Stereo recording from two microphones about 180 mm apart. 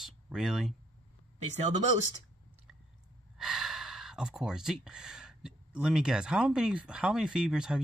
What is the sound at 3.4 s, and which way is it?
Speech, centre (ahead or behind).